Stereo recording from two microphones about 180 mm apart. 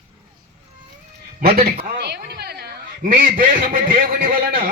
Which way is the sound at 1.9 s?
65° right (ahead or behind).